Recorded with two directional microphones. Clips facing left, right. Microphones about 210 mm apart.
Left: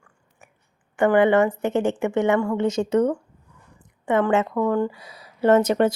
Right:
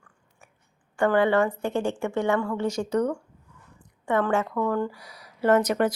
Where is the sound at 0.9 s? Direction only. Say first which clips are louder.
Left 4 dB; 20° left (ahead or behind).